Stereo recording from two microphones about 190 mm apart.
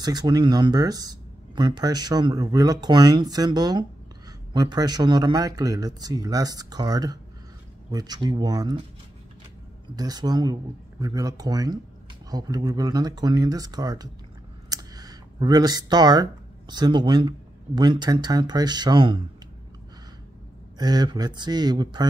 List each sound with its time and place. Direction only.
0.0 s speech: 20° right (ahead or behind)
9.9 s speech: 20° right (ahead or behind)
14.7 s a sound: 20° right (ahead or behind)
17.7 s speech: 25° right (ahead or behind)
20.7 s speech: 20° right (ahead or behind)